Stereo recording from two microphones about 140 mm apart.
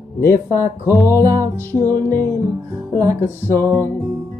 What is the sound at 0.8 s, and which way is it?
Music, 20° left (ahead or behind).